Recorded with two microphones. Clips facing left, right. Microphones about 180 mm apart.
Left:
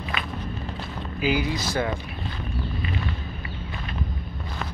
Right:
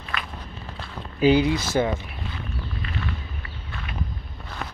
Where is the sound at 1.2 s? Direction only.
30° right (ahead or behind).